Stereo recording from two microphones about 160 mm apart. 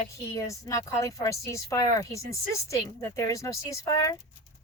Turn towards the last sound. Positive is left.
turn(degrees=20)  # may be behind; listen again after turning